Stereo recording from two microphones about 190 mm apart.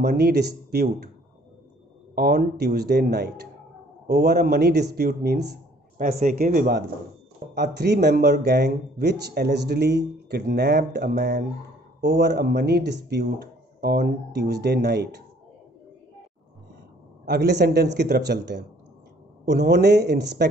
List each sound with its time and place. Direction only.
0.0 s speech: 60° right (ahead or behind)
2.1 s speech: 55° right (ahead or behind)
17.2 s speech: 60° right (ahead or behind)